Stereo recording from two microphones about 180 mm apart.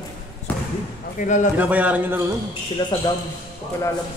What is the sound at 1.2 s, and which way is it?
Speech, 40° left (ahead or behind).